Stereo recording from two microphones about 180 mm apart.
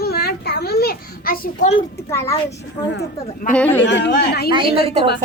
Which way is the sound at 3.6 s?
10° left (ahead or behind).